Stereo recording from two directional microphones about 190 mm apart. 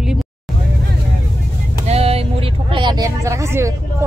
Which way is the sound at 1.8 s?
30° right (ahead or behind).